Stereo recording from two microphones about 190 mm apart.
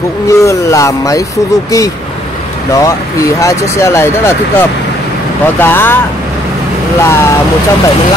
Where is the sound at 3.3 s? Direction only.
15° left (ahead or behind).